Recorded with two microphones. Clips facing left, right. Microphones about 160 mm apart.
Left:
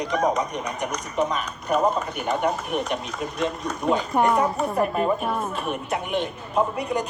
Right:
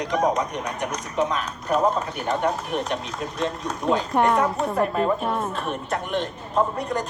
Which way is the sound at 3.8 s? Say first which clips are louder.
Even; centre (ahead or behind).